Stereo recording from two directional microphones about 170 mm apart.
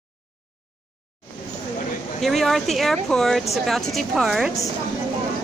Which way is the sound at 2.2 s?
Centre (ahead or behind).